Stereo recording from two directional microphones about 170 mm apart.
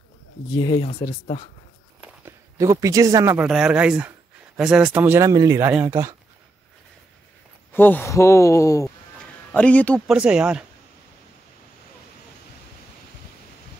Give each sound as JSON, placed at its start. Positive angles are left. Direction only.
{"t": 0.5, "sound": "speech", "side_deg": 25}
{"t": 2.0, "sound": "a sound", "side_deg": -15}
{"t": 3.3, "sound": "speech", "side_deg": -5}
{"t": 7.7, "sound": "speech", "side_deg": 10}
{"t": 10.0, "sound": "speech", "side_deg": -5}